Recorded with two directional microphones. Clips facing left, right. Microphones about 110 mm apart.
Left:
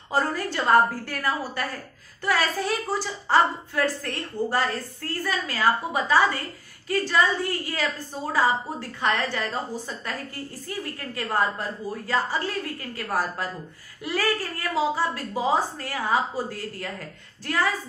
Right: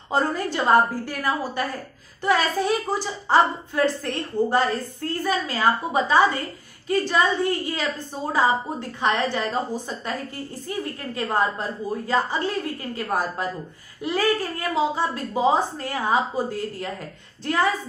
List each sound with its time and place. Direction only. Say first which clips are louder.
0.1 s a woman's voice: right 2 dB; 20° right (ahead or behind)